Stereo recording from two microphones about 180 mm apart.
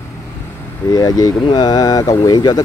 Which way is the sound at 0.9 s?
20° left (ahead or behind).